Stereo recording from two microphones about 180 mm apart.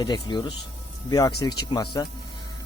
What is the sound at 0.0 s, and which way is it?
Speech, 25° left (ahead or behind).